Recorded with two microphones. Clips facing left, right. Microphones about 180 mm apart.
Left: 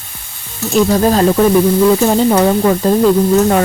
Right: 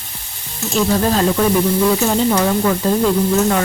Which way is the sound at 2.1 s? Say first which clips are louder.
Left 5 dB; 40° left (ahead or behind).